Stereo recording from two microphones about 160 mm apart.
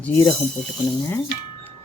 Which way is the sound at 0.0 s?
15° left (ahead or behind).